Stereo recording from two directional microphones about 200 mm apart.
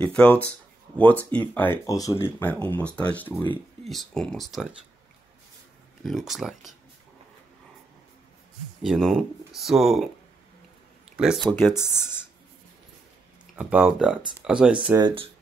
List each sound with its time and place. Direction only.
0.0 s speech: 5° left (ahead or behind)
6.0 s speech: centre (ahead or behind)
8.8 s speech: centre (ahead or behind)
11.1 s speech: centre (ahead or behind)
11.5 s speech: 10° left (ahead or behind)
13.6 s speech: 5° right (ahead or behind)
15.0 s speech: 20° right (ahead or behind)